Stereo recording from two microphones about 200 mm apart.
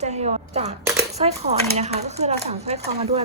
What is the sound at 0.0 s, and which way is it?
A woman's voice, 35° right (ahead or behind).